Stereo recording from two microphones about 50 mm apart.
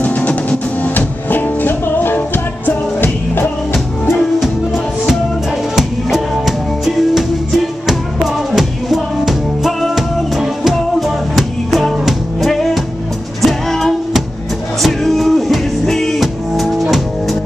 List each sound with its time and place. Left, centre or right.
0.0 s music: left
5.8 s music: centre